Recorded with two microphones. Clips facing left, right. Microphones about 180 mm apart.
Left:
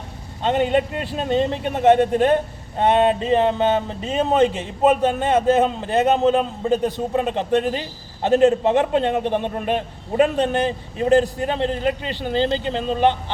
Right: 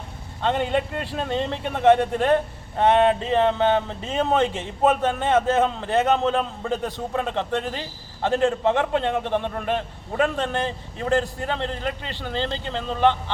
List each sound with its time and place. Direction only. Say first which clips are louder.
0.4 s a man's voice: left 4 dB; 15° left (ahead or behind)